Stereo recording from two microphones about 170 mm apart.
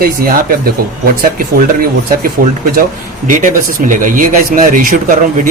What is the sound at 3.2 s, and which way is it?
Speech, 50° right (ahead or behind).